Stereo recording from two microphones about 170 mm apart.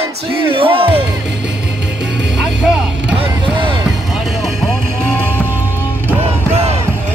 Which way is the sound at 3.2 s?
30° right (ahead or behind).